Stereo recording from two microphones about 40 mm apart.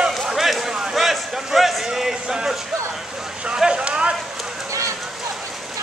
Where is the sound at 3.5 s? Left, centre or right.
Right.